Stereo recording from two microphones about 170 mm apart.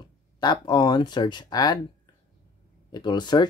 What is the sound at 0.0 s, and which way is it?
Speech, 25° left (ahead or behind).